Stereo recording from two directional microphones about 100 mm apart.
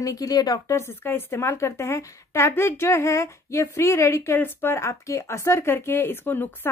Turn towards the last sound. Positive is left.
turn(degrees=20)  # may be behind; listen again after turning